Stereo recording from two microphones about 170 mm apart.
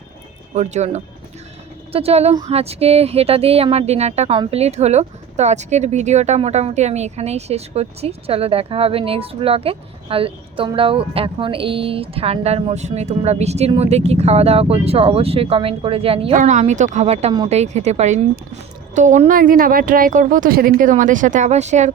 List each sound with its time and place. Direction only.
0.5 s speech: 40° right (ahead or behind)
16.4 s a woman's voice: 45° right (ahead or behind)